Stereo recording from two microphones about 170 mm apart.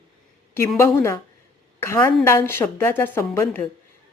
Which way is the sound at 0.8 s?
15° left (ahead or behind).